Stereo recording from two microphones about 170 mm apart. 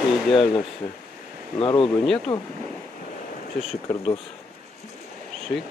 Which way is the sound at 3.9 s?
10° left (ahead or behind).